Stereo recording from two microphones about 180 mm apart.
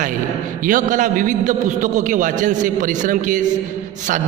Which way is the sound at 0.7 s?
45° right (ahead or behind).